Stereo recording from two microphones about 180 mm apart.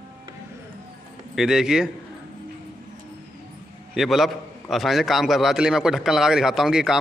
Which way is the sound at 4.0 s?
Centre (ahead or behind).